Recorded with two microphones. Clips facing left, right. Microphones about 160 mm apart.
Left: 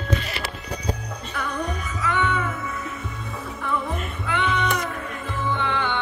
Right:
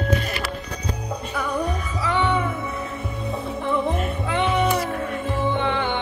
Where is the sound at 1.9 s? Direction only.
15° right (ahead or behind).